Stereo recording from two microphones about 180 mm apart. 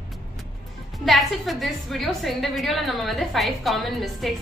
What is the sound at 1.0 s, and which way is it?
A woman's voice, centre (ahead or behind).